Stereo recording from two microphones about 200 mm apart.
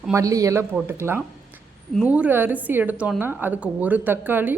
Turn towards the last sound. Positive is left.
turn(degrees=-10)  # may be behind; listen again after turning